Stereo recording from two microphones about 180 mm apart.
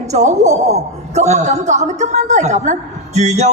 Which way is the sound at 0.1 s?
40° right (ahead or behind).